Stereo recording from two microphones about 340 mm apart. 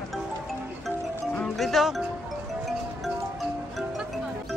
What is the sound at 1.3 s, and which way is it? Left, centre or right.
Music, centre.